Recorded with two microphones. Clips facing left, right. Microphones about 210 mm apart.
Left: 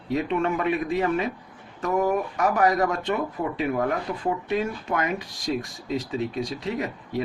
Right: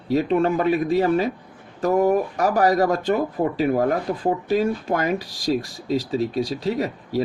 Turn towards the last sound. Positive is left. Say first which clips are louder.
# right 4 dB
turn(degrees=-35)  # may be behind; listen again after turning